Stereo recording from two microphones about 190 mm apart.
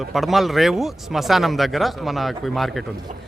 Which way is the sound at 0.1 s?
Centre (ahead or behind).